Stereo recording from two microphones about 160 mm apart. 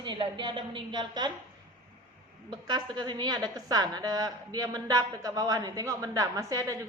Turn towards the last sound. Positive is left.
turn(degrees=-20)  # may be behind; listen again after turning